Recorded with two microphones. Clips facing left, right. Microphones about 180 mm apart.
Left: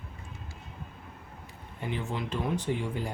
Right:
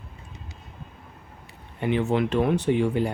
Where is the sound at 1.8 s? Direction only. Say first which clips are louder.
Right 11 dB; 70° right (ahead or behind).